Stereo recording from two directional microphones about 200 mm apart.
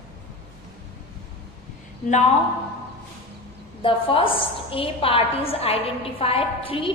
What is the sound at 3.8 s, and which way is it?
A woman's voice, 25° left (ahead or behind).